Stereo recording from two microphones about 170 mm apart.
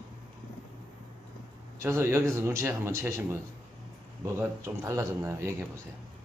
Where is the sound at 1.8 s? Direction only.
15° right (ahead or behind).